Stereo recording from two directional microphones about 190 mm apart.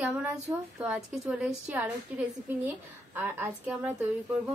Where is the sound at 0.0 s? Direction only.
5° right (ahead or behind).